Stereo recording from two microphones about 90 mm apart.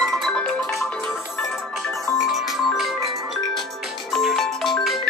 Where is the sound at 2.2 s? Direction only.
Centre (ahead or behind).